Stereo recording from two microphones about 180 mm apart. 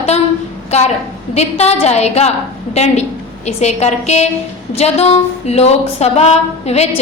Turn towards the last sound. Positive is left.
turn(degrees=35)  # may be behind; listen again after turning